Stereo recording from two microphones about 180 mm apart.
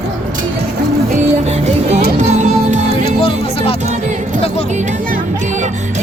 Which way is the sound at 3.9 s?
40° right (ahead or behind).